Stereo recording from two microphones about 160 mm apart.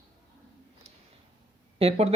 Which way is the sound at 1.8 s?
35° right (ahead or behind).